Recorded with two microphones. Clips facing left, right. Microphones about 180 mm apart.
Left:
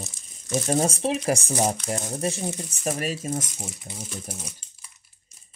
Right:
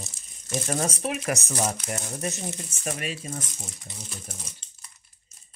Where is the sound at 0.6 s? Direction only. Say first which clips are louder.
Left 5 dB; 30° left (ahead or behind).